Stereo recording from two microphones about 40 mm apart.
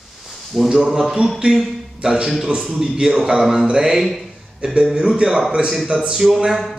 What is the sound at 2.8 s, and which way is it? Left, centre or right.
Speech, centre.